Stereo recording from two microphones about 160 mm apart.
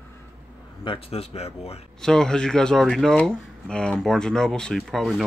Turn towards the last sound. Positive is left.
turn(degrees=0)  # may be behind; listen again after turning